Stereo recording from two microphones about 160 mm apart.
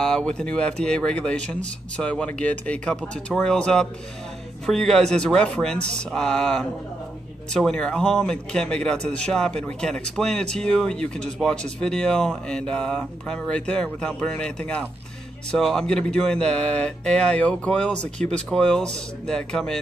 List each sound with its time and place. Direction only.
0.0 s speech: 5° left (ahead or behind)